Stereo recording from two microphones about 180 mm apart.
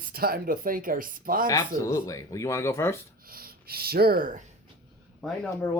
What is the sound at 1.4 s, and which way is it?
Speech, 15° left (ahead or behind).